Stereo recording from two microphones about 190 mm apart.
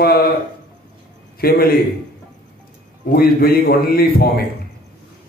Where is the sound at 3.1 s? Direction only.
50° left (ahead or behind).